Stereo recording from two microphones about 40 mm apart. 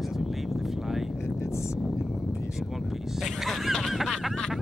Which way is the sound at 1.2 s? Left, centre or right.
Left.